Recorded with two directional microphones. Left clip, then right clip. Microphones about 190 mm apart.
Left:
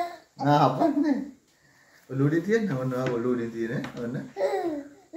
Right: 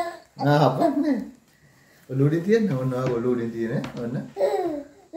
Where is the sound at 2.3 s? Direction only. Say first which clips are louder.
Right 3 dB; 5° right (ahead or behind).